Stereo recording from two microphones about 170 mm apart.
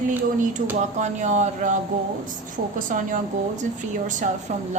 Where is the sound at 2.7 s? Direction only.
50° right (ahead or behind).